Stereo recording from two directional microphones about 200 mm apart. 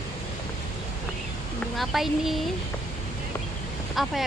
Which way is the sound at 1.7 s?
Centre (ahead or behind).